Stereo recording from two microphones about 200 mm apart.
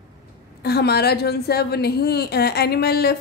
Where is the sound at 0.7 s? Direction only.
55° left (ahead or behind).